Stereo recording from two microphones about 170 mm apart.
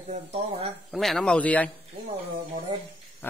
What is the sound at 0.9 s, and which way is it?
Speech, centre (ahead or behind).